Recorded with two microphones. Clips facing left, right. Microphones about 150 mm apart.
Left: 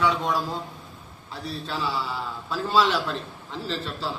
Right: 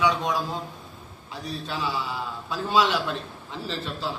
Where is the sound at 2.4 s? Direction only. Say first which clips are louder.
Even; 15° right (ahead or behind).